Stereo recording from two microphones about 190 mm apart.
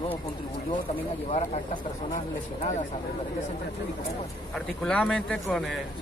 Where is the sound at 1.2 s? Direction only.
35° left (ahead or behind).